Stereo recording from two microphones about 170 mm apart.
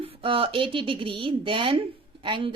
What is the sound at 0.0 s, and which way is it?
A woman's voice, 35° right (ahead or behind).